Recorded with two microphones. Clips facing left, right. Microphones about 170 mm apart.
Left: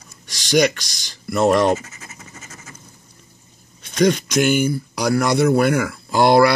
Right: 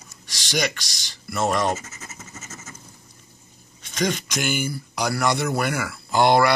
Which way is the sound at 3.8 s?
50° left (ahead or behind).